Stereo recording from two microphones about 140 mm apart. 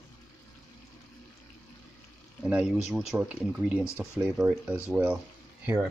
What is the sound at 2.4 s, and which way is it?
Speech, 5° right (ahead or behind).